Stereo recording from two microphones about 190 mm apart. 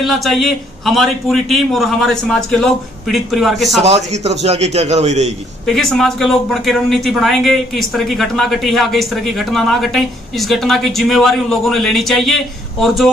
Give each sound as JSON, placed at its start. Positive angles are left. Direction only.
{"t": 0.0, "sound": "speech", "side_deg": 0}
{"t": 3.8, "sound": "a man's voice", "side_deg": -35}
{"t": 5.7, "sound": "speech", "side_deg": 0}